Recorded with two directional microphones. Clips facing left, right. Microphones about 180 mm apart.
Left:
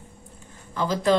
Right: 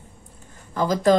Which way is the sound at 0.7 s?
45° right (ahead or behind).